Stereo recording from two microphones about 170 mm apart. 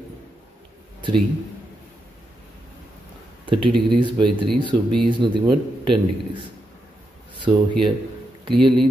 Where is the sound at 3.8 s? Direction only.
30° right (ahead or behind).